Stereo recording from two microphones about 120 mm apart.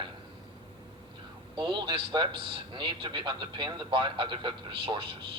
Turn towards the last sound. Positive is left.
turn(degrees=-45)  # may be behind; listen again after turning